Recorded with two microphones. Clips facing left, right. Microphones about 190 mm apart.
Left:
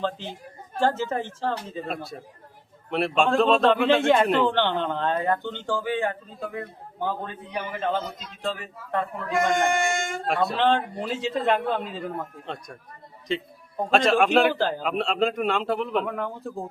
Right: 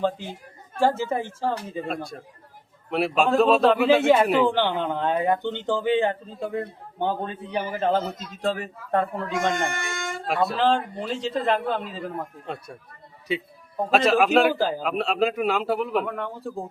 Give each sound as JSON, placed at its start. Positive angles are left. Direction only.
{"t": 0.8, "sound": "a man's voice", "side_deg": -10}
{"t": 2.9, "sound": "a man's voice", "side_deg": 0}
{"t": 9.6, "sound": "speech", "side_deg": 55}
{"t": 10.2, "sound": "a man's voice", "side_deg": 0}